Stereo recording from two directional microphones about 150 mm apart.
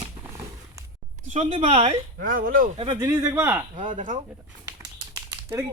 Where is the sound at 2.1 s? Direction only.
65° right (ahead or behind).